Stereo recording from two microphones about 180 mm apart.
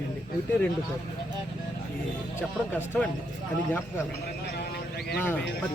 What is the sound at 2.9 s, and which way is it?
Speech, 5° left (ahead or behind).